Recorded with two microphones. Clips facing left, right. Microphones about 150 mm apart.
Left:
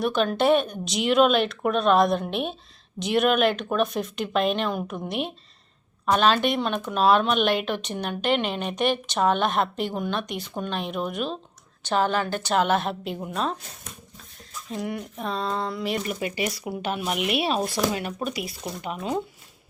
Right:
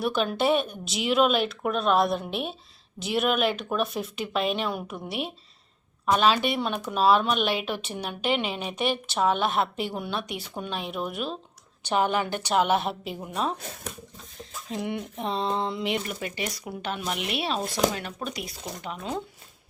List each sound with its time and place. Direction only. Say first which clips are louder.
0.0 s a woman's voice: left 3 dB; 5° right (ahead or behind)
14.8 s a sound: right 1 dB; 25° right (ahead or behind)
16.0 s speech: left 5 dB; 10° left (ahead or behind)